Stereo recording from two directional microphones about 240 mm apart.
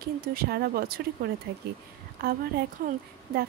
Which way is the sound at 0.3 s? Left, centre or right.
Right.